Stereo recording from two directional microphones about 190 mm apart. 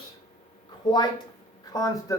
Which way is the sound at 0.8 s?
20° left (ahead or behind).